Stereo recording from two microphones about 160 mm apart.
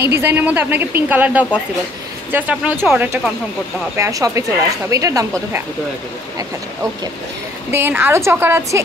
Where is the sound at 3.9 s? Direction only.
20° right (ahead or behind).